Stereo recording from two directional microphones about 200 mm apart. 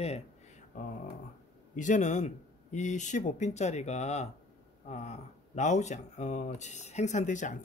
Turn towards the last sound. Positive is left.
turn(degrees=40)  # may be behind; listen again after turning